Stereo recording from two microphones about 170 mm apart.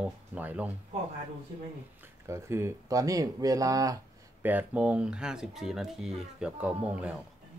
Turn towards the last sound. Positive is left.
turn(degrees=-10)  # may be behind; listen again after turning